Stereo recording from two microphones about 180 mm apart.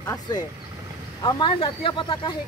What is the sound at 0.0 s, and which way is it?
Speech, 20° left (ahead or behind).